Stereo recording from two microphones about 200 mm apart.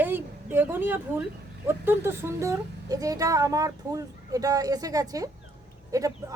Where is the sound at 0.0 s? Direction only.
10° right (ahead or behind).